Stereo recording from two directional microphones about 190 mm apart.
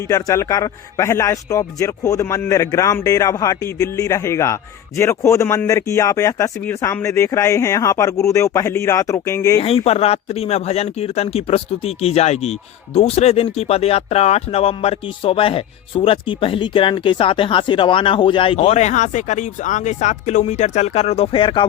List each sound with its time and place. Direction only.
0.1 s speech: 20° left (ahead or behind)
9.6 s speech: 30° left (ahead or behind)